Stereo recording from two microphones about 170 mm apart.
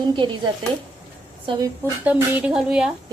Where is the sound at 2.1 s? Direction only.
5° right (ahead or behind).